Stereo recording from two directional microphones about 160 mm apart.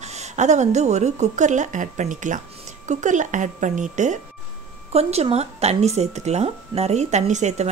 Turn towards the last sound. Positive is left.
turn(degrees=-45)  # may be behind; listen again after turning